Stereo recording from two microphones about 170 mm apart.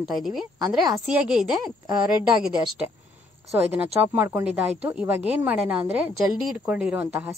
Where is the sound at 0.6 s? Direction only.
20° right (ahead or behind).